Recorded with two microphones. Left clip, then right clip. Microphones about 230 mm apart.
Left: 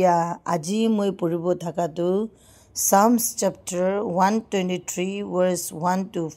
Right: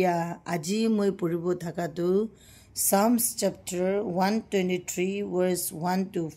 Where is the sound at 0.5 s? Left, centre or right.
Centre.